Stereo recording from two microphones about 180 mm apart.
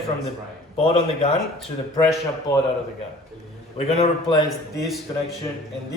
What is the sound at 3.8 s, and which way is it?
Speech, 35° left (ahead or behind).